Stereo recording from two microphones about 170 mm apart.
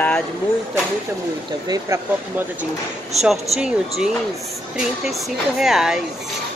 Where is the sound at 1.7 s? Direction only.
15° right (ahead or behind).